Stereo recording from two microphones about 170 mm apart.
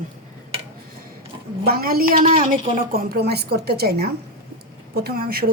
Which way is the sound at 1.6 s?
60° right (ahead or behind).